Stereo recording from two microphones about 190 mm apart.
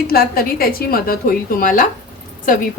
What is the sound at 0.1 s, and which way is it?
A woman's voice, 50° left (ahead or behind).